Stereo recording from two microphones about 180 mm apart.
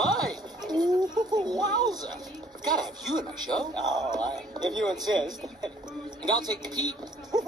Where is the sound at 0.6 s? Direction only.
25° right (ahead or behind).